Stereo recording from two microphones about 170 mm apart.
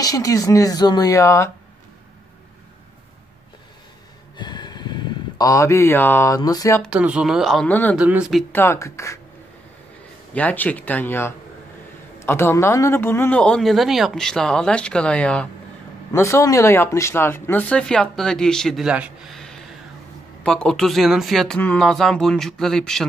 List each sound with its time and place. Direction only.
0.0 s speech: 20° left (ahead or behind)
4.4 s speech: 25° left (ahead or behind)
6.8 s speech: 5° right (ahead or behind)
8.5 s speech: 15° left (ahead or behind)
10.3 s speech: 10° left (ahead or behind)
16.1 s speech: 15° left (ahead or behind)